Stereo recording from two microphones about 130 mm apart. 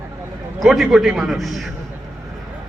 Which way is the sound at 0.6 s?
Centre (ahead or behind).